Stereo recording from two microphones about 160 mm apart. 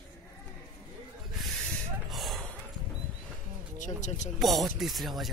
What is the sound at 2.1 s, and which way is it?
Gasp, centre (ahead or behind).